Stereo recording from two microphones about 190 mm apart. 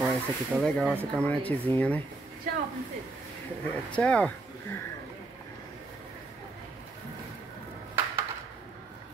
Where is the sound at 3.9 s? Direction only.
5° left (ahead or behind).